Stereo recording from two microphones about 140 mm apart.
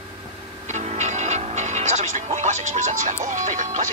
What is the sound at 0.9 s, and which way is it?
Speech, 55° right (ahead or behind).